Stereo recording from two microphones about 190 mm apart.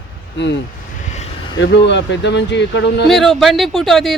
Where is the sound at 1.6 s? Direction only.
70° left (ahead or behind).